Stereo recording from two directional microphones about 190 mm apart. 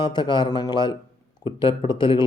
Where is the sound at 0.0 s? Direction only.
25° left (ahead or behind).